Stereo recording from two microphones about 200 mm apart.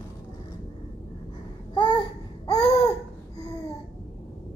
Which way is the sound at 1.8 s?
25° left (ahead or behind).